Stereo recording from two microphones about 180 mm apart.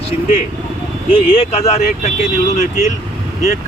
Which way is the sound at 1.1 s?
35° left (ahead or behind).